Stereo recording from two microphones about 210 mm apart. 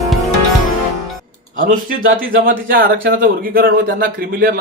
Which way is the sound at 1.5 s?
40° right (ahead or behind).